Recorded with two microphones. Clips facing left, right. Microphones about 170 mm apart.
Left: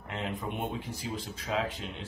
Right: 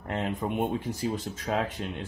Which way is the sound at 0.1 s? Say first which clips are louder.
Right 6 dB; 45° right (ahead or behind).